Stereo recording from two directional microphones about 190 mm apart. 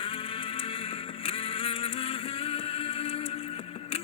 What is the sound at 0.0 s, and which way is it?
Music, 30° left (ahead or behind).